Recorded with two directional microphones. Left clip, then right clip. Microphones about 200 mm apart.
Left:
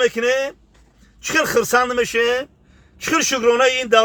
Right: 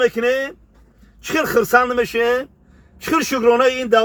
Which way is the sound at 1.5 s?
25° left (ahead or behind).